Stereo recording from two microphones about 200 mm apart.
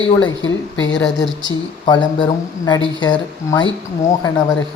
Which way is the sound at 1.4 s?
20° left (ahead or behind).